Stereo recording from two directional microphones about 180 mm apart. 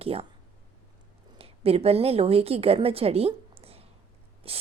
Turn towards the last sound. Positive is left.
turn(degrees=-30)  # may be behind; listen again after turning